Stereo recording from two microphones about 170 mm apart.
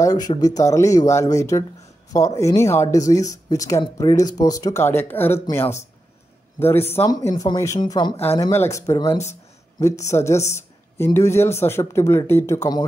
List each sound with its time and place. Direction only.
0.0 s a sound: 20° left (ahead or behind)
0.6 s speech: 20° left (ahead or behind)
6.9 s speech: 15° left (ahead or behind)